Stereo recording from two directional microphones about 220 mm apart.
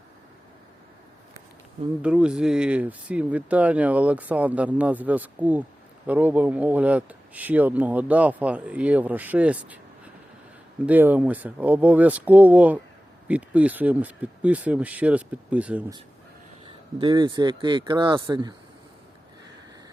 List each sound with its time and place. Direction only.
2.0 s speech: 5° right (ahead or behind)
10.8 s speech: 10° right (ahead or behind)
16.6 s speech: 20° right (ahead or behind)